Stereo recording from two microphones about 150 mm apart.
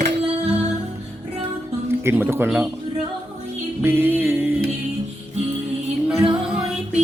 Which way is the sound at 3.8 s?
15° right (ahead or behind).